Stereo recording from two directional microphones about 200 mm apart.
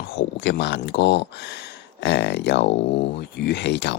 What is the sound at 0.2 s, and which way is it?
Speech, 60° left (ahead or behind).